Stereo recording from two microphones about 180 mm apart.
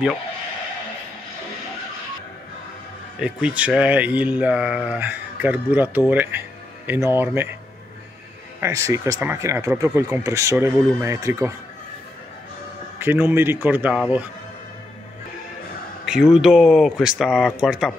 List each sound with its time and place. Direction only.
3.2 s speech: 5° right (ahead or behind)
8.5 s speech: 15° right (ahead or behind)
13.0 s speech: 10° right (ahead or behind)
16.1 s speech: centre (ahead or behind)